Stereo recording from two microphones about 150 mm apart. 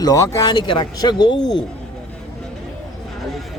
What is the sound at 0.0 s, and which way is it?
A man's voice, 20° left (ahead or behind).